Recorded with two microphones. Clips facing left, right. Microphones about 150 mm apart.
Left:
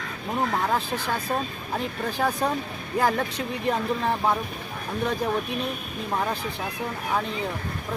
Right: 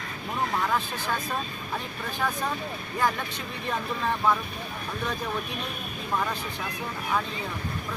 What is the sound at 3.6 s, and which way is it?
Speech, 30° left (ahead or behind).